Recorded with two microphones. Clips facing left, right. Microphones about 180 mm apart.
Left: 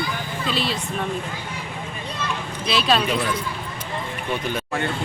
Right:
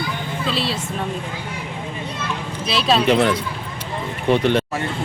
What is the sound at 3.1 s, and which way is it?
Speech, 75° right (ahead or behind).